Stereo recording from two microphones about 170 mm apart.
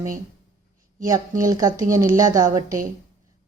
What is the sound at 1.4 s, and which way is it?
A woman's voice, 20° right (ahead or behind).